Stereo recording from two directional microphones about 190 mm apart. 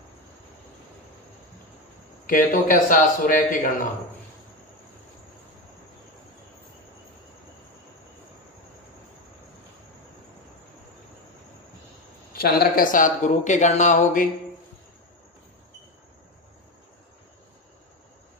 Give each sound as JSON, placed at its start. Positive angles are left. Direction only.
{"t": 2.2, "sound": "speech", "side_deg": 45}
{"t": 12.3, "sound": "speech", "side_deg": 55}